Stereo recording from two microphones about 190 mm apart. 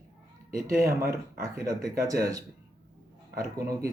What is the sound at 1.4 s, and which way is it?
Speech, 20° right (ahead or behind).